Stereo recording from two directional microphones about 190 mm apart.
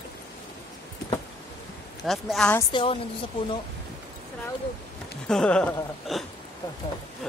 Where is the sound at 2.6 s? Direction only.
25° left (ahead or behind).